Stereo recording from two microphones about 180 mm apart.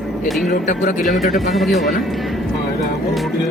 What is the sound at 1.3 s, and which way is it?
Speech, centre (ahead or behind).